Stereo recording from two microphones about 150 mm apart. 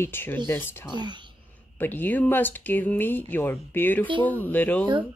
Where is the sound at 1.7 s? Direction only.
10° left (ahead or behind).